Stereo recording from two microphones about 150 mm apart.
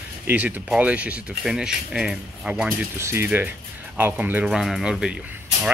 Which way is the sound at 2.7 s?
15° right (ahead or behind).